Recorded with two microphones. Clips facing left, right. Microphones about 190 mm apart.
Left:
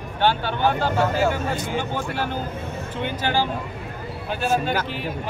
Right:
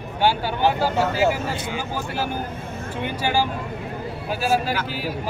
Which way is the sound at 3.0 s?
10° right (ahead or behind).